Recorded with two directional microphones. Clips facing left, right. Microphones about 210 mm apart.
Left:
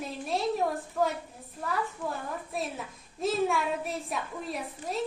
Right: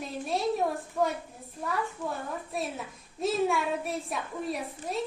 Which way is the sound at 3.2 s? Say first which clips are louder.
Right 1 dB; centre (ahead or behind).